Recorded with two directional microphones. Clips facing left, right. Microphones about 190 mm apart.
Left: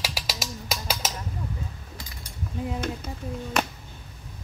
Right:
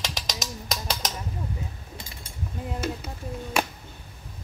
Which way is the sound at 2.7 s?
5° right (ahead or behind).